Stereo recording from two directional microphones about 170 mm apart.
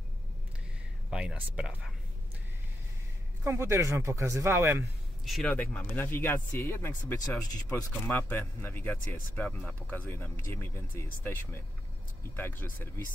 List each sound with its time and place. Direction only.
1.1 s speech: 5° right (ahead or behind)
3.4 s speech: 15° right (ahead or behind)
5.2 s speech: centre (ahead or behind)